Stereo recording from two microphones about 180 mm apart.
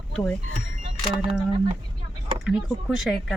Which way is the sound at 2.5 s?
Centre (ahead or behind).